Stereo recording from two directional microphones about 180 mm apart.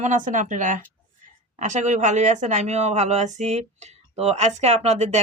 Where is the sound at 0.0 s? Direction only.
45° right (ahead or behind).